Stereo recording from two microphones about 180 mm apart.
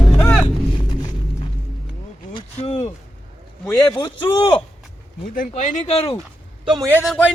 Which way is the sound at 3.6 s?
15° left (ahead or behind).